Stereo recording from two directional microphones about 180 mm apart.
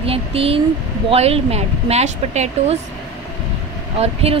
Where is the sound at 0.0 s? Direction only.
30° right (ahead or behind).